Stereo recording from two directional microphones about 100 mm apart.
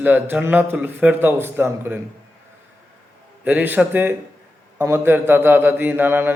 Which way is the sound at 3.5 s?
15° right (ahead or behind).